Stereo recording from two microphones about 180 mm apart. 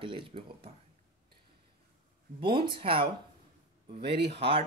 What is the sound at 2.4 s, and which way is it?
Speech, 30° right (ahead or behind).